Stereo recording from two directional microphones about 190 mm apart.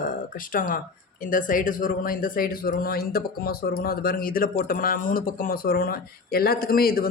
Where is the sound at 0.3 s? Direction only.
45° left (ahead or behind).